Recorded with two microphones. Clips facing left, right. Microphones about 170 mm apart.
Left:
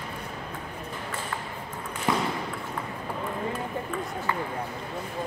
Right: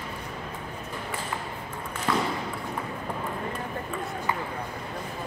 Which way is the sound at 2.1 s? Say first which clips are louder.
Even; 15° left (ahead or behind).